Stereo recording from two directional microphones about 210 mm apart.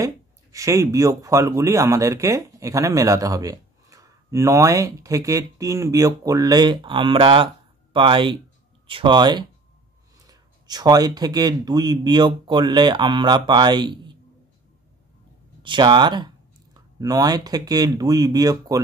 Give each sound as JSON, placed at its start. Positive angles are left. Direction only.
{"t": 0.0, "sound": "speech", "side_deg": -15}
{"t": 15.6, "sound": "speech", "side_deg": -20}